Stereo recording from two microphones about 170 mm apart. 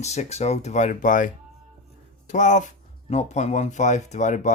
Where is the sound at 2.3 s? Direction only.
45° left (ahead or behind).